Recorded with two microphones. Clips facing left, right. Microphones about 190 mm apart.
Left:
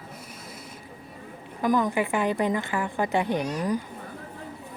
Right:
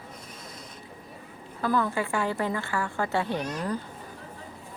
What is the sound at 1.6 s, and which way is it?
A woman's voice, 15° left (ahead or behind).